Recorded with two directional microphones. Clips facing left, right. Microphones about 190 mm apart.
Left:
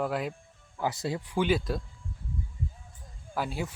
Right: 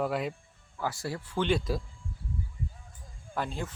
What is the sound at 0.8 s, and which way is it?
Speech, 20° left (ahead or behind).